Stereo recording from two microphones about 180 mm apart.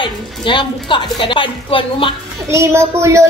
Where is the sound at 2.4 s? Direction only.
15° right (ahead or behind).